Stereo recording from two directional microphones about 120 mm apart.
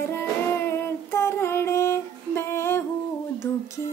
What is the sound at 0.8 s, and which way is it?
Female singing, 20° left (ahead or behind).